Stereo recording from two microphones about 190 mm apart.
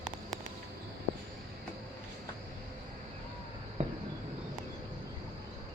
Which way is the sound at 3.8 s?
40° right (ahead or behind).